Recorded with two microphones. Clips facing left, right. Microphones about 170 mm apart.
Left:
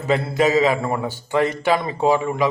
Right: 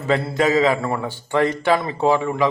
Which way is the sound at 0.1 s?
10° left (ahead or behind).